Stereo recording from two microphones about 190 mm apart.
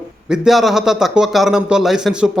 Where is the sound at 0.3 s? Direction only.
Centre (ahead or behind).